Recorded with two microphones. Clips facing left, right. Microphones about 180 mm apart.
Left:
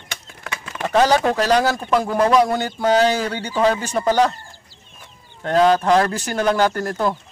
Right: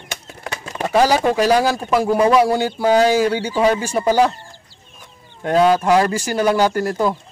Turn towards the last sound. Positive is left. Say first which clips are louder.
# right 2 dB
turn(degrees=-10)  # may be behind; listen again after turning